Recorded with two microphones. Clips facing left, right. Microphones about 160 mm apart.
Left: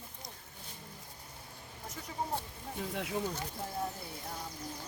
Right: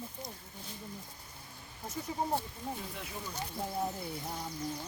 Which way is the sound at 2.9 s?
70° left (ahead or behind).